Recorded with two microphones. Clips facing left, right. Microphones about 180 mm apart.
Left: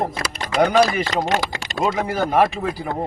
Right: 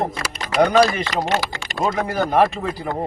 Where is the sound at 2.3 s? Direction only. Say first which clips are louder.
Right 1 dB; 5° left (ahead or behind).